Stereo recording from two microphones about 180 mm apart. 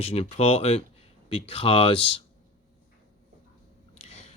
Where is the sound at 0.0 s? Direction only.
35° left (ahead or behind).